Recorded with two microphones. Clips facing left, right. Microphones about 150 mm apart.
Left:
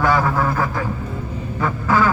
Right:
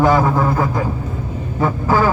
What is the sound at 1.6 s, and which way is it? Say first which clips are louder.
Speech: right 2 dB; 30° right (ahead or behind).